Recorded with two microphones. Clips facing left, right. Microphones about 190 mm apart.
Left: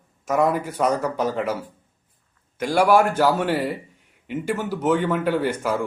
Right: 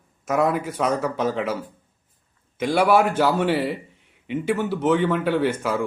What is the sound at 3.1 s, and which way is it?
A man's voice, 10° left (ahead or behind).